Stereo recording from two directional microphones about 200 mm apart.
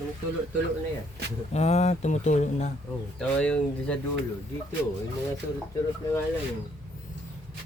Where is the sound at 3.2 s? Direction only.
5° left (ahead or behind).